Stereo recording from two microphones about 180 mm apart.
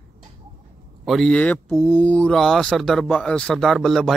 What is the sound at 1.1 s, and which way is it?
Speech, 5° left (ahead or behind).